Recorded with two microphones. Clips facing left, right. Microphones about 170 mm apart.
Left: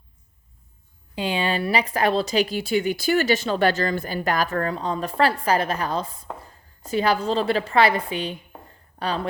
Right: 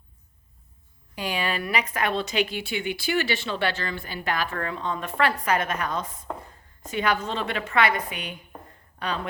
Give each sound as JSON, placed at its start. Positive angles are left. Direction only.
{"t": 1.1, "sound": "speech", "side_deg": 25}